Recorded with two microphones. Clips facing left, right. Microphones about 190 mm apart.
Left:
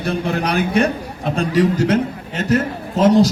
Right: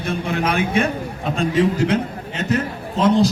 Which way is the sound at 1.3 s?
40° left (ahead or behind).